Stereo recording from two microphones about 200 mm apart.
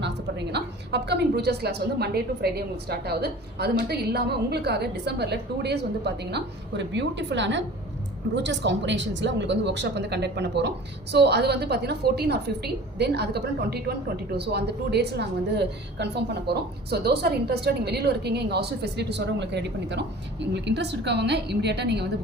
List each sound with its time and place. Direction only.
0.0 s a woman's voice: 55° right (ahead or behind)